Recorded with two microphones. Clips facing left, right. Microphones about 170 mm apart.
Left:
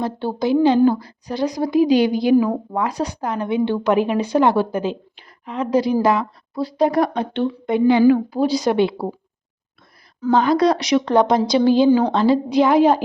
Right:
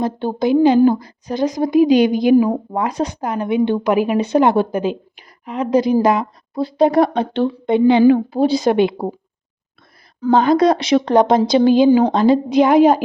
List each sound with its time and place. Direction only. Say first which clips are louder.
0.0 s a woman's voice: right 3 dB; 20° right (ahead or behind)
10.2 s a woman's voice: right 3 dB; 25° right (ahead or behind)